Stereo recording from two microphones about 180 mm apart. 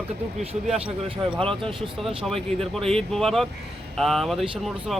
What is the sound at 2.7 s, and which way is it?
Speech, 5° left (ahead or behind).